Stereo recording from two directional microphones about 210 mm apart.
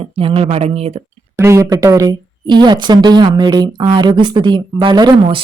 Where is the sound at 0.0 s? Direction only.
25° right (ahead or behind).